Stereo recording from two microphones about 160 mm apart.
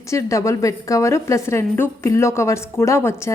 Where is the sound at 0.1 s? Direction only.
20° left (ahead or behind).